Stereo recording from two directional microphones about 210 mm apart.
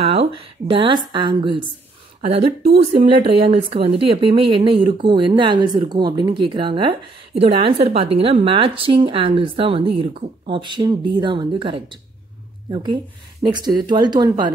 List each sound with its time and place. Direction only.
0.0 s speech: 25° right (ahead or behind)